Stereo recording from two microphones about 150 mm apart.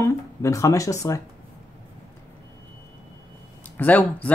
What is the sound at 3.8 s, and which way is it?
Speech, 10° left (ahead or behind).